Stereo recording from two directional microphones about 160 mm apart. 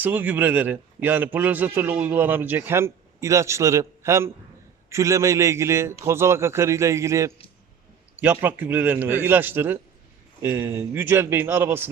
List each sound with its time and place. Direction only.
0.0 s a man's voice: 10° right (ahead or behind)